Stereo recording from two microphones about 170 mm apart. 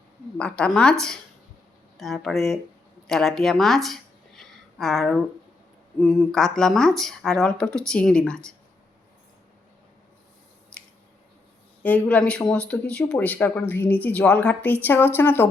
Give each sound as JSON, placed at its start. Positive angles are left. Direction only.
{"t": 0.3, "sound": "speech", "side_deg": 5}
{"t": 11.8, "sound": "speech", "side_deg": 10}